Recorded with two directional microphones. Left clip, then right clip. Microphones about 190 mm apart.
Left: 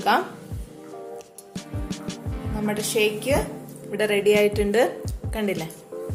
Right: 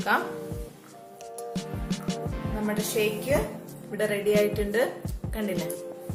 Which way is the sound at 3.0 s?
45° left (ahead or behind).